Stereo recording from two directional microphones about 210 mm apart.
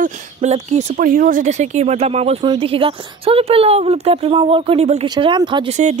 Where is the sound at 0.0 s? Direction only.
35° right (ahead or behind).